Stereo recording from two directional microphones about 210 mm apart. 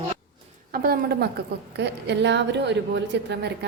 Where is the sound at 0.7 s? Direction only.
45° right (ahead or behind).